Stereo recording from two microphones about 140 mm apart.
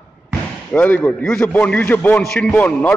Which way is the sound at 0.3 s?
10° left (ahead or behind).